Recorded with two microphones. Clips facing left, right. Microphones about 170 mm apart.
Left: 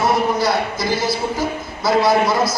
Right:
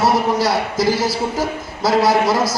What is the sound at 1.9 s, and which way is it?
Speech, 90° right.